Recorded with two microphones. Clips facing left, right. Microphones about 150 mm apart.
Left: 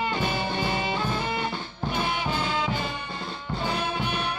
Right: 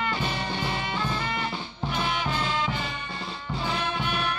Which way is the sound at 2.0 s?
20° left (ahead or behind).